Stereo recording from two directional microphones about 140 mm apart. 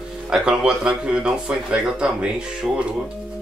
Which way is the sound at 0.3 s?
5° right (ahead or behind).